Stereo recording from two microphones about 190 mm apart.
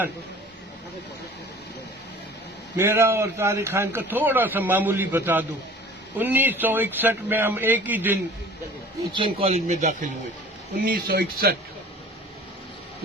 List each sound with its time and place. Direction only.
2.7 s a man's voice: 10° right (ahead or behind)
9.1 s speech: 30° right (ahead or behind)
10.8 s speech: 50° right (ahead or behind)